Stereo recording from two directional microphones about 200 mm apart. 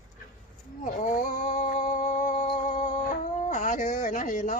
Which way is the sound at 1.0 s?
40° left (ahead or behind).